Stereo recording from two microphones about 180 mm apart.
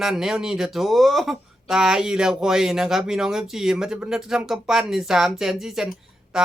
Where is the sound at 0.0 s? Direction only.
Centre (ahead or behind).